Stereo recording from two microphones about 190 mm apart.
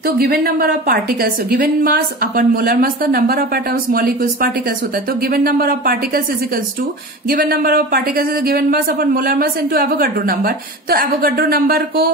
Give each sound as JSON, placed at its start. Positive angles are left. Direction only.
{"t": 0.0, "sound": "speech", "side_deg": -55}
{"t": 7.2, "sound": "speech", "side_deg": -50}